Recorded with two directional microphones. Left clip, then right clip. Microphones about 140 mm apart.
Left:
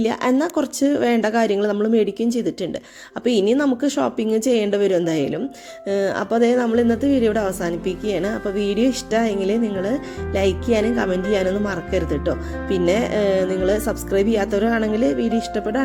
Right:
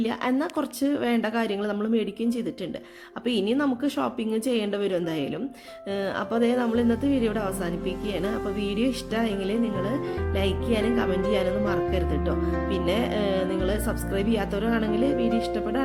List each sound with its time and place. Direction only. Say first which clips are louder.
0.0 s a woman's voice: left 7 dB; 35° left (ahead or behind)